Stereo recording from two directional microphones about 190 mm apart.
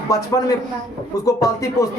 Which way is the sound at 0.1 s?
15° left (ahead or behind).